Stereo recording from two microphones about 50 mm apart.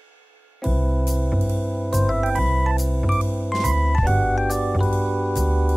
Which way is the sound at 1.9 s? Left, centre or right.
Centre.